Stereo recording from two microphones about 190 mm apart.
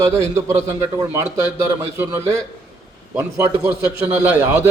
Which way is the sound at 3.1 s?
15° right (ahead or behind).